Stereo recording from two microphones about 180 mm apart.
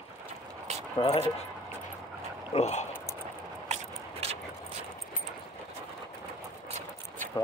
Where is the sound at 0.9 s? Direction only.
30° left (ahead or behind).